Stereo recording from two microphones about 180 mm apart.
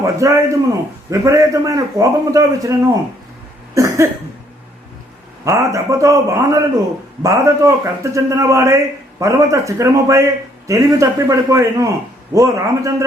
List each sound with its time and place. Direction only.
0.0 s a man's voice: 15° right (ahead or behind)
3.8 s cough: 15° right (ahead or behind)
5.5 s a man's voice: 15° right (ahead or behind)